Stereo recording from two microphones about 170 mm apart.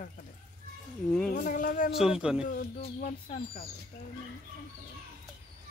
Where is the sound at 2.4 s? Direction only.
50° left (ahead or behind).